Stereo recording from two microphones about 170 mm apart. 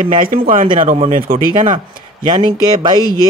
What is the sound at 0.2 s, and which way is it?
Speech, 50° right (ahead or behind).